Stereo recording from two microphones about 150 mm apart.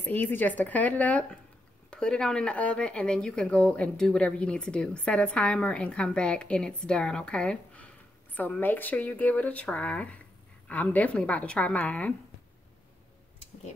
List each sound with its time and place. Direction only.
0.0 s speech: 10° left (ahead or behind)